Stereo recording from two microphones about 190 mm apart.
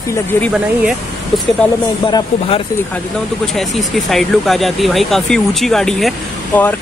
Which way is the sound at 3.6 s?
Centre (ahead or behind).